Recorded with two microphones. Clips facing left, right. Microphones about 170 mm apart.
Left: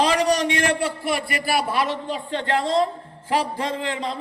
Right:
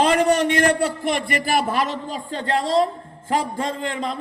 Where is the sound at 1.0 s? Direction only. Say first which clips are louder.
Right 2 dB; 5° left (ahead or behind).